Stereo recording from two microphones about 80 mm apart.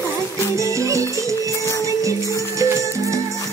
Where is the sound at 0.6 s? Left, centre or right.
Right.